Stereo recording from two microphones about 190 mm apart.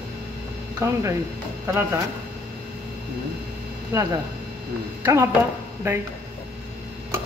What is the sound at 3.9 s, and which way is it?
Speech, 15° right (ahead or behind).